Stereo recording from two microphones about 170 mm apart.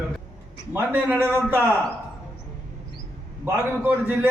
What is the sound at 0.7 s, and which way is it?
Speech, 10° right (ahead or behind).